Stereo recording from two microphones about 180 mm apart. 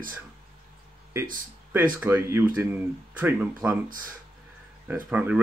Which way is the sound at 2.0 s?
10° right (ahead or behind).